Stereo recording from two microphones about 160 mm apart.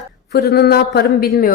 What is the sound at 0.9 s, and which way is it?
Speech, 70° left (ahead or behind).